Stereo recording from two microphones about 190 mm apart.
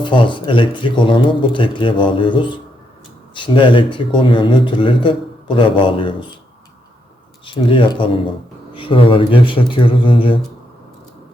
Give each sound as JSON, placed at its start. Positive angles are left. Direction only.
{"t": 0.0, "sound": "speech", "side_deg": 25}
{"t": 7.4, "sound": "speech", "side_deg": 25}